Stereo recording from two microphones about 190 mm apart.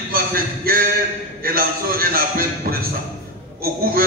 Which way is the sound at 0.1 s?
50° right (ahead or behind).